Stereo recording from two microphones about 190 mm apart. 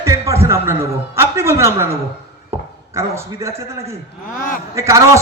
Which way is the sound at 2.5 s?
15° right (ahead or behind).